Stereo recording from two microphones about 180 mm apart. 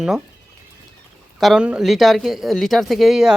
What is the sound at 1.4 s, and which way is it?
Speech, centre (ahead or behind).